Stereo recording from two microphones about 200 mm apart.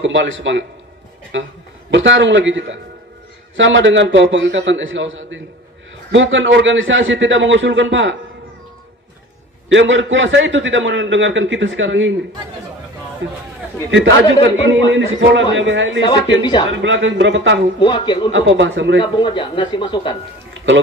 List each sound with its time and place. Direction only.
0.0 s a man's voice: 65° right (ahead or behind)
9.7 s a man's voice: 70° right (ahead or behind)
13.2 s a man's voice: 65° right (ahead or behind)
16.0 s speech: 20° left (ahead or behind)
16.7 s a man's voice: 70° right (ahead or behind)
17.7 s speech: 25° left (ahead or behind)
18.3 s a man's voice: 70° right (ahead or behind)
19.1 s speech: 25° left (ahead or behind)